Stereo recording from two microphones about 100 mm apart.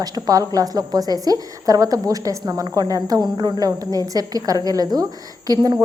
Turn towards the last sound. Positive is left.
turn(degrees=-40)  # may be behind; listen again after turning